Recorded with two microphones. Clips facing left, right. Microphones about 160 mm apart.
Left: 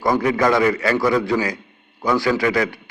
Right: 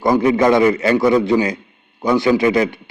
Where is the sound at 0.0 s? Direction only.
20° right (ahead or behind).